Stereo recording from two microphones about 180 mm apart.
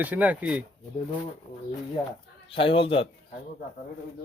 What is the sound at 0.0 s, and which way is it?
Speech, 10° right (ahead or behind).